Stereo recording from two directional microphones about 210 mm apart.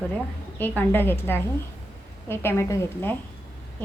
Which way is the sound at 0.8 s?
10° left (ahead or behind).